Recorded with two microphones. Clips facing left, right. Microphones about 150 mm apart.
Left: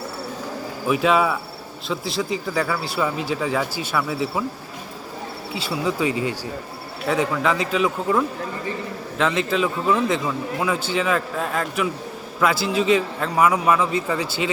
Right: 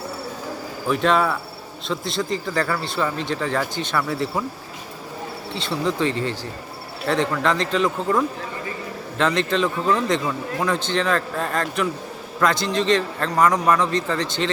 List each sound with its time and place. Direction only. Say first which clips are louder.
0.9 s a man's voice: left 1 dB; 5° left (ahead or behind)
5.5 s a man's voice: even; 10° left (ahead or behind)